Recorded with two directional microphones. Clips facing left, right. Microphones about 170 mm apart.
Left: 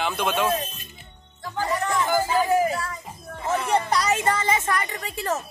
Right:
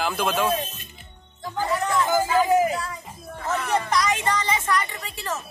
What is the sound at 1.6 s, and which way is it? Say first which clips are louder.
Music: right 1 dB; 15° right (ahead or behind).